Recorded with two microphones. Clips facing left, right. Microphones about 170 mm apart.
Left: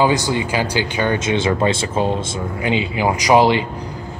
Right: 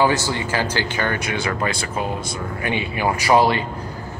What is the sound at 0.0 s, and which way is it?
Speech, 15° left (ahead or behind).